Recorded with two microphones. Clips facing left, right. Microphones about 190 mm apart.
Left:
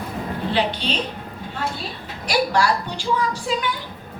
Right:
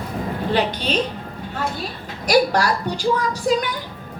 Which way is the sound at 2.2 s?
40° right (ahead or behind).